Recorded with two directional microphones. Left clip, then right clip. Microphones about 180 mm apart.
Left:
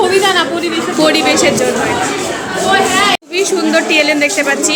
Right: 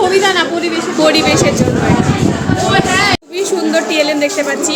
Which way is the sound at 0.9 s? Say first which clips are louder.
Even; centre (ahead or behind).